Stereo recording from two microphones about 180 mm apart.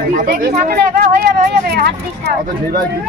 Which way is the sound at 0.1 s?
45° right (ahead or behind).